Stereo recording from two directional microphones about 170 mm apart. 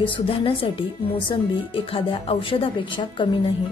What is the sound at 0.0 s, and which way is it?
Speech, 30° left (ahead or behind).